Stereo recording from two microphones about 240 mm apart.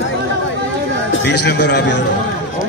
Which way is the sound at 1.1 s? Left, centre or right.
Left.